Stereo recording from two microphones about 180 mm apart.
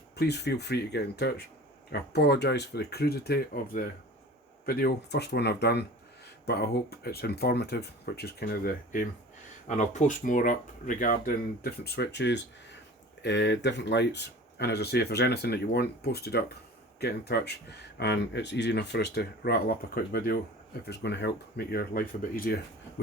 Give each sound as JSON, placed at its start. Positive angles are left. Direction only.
{"t": 0.2, "sound": "speech", "side_deg": 65}
{"t": 9.6, "sound": "speech", "side_deg": 40}
{"t": 20.8, "sound": "speech", "side_deg": 70}